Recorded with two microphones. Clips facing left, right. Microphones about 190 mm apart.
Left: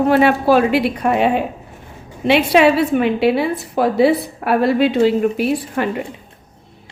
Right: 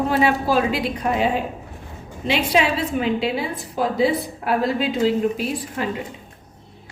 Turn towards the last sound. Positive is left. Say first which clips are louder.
# left 7 dB
turn(degrees=65)  # may be behind; listen again after turning